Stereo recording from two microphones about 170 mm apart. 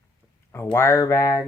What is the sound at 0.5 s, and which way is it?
Speech, 15° left (ahead or behind).